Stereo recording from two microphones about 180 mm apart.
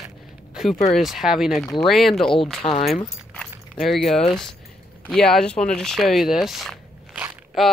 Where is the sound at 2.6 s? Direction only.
30° left (ahead or behind).